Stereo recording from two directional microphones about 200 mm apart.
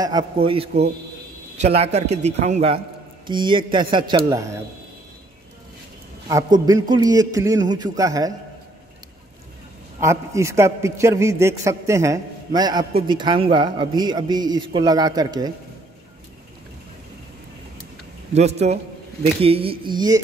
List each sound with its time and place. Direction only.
0.0 s a man's voice: 25° right (ahead or behind)
6.2 s a man's voice: 20° right (ahead or behind)
9.9 s a man's voice: 15° right (ahead or behind)
18.3 s a man's voice: 30° right (ahead or behind)